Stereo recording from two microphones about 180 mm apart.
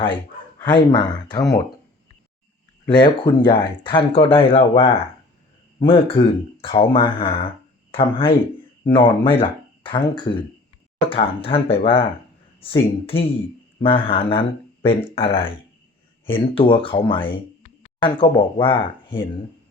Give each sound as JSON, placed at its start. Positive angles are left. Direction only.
{"t": 0.6, "sound": "speech", "side_deg": 25}
{"t": 2.8, "sound": "speech", "side_deg": 25}